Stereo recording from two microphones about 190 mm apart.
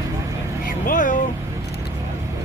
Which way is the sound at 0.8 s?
45° left (ahead or behind).